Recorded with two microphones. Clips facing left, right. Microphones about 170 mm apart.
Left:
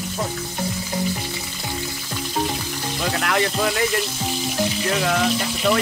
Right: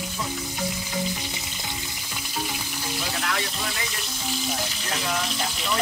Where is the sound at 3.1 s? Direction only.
70° left (ahead or behind).